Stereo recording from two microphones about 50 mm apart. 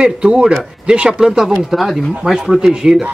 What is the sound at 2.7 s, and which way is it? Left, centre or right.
Speech, centre.